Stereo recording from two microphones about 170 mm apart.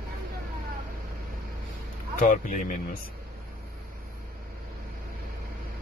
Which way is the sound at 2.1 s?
50° left (ahead or behind).